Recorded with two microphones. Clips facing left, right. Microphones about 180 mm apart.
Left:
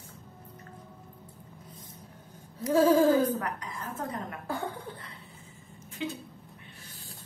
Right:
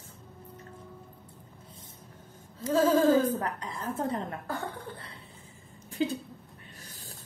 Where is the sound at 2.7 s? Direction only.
10° left (ahead or behind).